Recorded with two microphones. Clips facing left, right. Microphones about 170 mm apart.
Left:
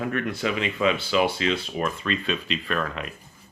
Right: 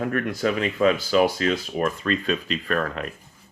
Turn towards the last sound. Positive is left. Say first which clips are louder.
# right 3 dB
turn(degrees=-45)  # may be behind; listen again after turning